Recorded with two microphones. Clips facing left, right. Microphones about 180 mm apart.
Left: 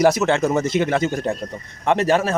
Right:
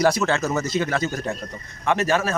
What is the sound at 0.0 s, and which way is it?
Speech, 20° left (ahead or behind).